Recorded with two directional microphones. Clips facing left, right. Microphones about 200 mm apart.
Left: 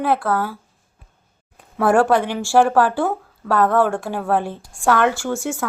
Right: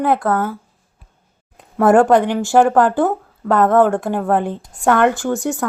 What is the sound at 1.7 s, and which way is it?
A woman's voice, 20° right (ahead or behind).